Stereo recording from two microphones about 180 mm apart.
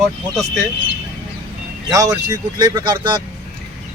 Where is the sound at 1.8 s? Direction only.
20° right (ahead or behind).